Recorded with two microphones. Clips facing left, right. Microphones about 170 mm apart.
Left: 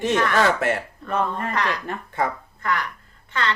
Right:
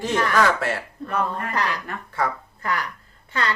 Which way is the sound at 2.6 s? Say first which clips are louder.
Left 1 dB; 35° right (ahead or behind).